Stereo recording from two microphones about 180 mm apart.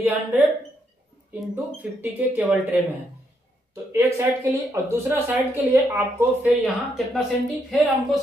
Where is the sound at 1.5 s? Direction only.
10° right (ahead or behind).